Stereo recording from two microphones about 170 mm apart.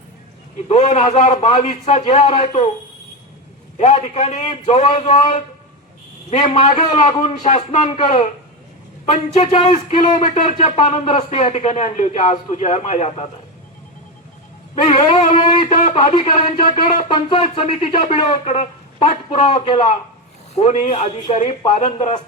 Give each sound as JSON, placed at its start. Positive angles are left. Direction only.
{"t": 0.7, "sound": "a man's voice", "side_deg": 40}
{"t": 3.8, "sound": "a man's voice", "side_deg": 45}
{"t": 6.5, "sound": "a man's voice", "side_deg": 45}
{"t": 6.7, "sound": "a man's voice", "side_deg": 30}
{"t": 7.2, "sound": "a man's voice", "side_deg": 40}
{"t": 10.2, "sound": "a man's voice", "side_deg": 45}
{"t": 10.6, "sound": "speech", "side_deg": 35}
{"t": 14.8, "sound": "a man's voice", "side_deg": 45}
{"t": 17.1, "sound": "speech", "side_deg": 30}
{"t": 20.6, "sound": "speech", "side_deg": 40}